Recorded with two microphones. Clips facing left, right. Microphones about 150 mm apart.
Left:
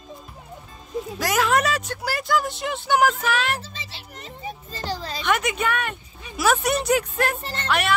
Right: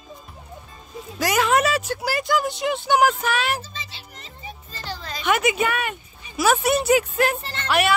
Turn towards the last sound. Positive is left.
turn(degrees=-5)  # may be behind; listen again after turning